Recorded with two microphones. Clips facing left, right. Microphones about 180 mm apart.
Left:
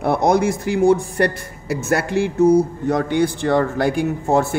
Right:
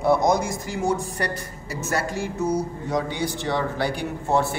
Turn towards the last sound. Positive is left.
turn(degrees=45)  # may be behind; listen again after turning